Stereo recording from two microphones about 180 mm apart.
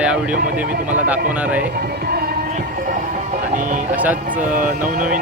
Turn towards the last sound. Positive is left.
turn(degrees=-10)  # may be behind; listen again after turning